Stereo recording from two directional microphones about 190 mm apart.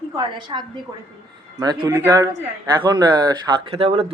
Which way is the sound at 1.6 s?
20° right (ahead or behind).